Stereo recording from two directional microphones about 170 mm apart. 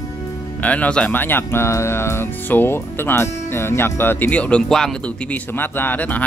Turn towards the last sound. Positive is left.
turn(degrees=10)  # may be behind; listen again after turning